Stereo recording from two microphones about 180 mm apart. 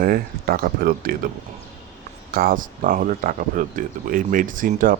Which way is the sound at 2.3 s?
55° right (ahead or behind).